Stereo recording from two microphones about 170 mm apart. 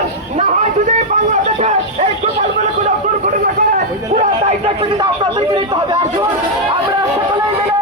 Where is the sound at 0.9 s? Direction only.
45° right (ahead or behind).